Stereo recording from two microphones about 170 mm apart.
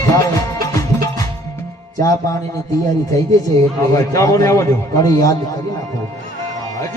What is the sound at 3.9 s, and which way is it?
Speech, 20° left (ahead or behind).